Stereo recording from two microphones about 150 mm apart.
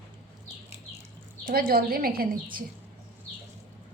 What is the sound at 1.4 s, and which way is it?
Speech, 85° right.